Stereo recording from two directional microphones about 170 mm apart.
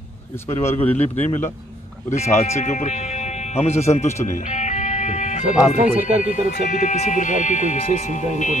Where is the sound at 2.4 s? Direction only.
45° left (ahead or behind).